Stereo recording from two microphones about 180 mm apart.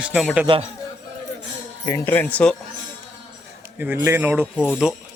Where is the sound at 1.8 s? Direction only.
15° left (ahead or behind).